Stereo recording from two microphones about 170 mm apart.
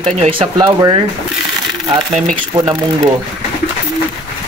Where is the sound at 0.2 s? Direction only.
30° right (ahead or behind).